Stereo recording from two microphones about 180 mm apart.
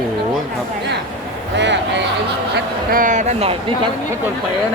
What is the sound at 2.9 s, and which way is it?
Speech, 45° right (ahead or behind).